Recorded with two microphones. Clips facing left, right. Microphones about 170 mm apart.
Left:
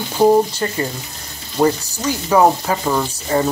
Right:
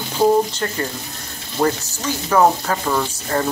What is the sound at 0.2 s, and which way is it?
Speech, 10° left (ahead or behind).